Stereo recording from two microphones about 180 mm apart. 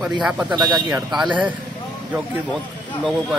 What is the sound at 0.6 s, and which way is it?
Speech, 25° right (ahead or behind).